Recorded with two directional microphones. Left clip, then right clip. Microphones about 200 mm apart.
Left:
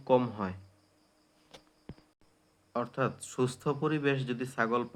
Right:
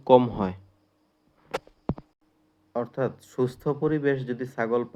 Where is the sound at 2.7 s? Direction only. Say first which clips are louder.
Right 4 dB; 15° right (ahead or behind).